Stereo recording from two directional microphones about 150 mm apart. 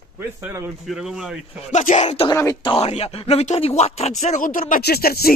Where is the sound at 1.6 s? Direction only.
50° left (ahead or behind).